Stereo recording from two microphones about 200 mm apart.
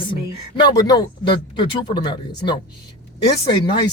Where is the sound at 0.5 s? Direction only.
20° left (ahead or behind).